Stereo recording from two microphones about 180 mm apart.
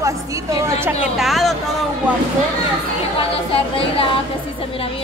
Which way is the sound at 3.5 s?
30° left (ahead or behind).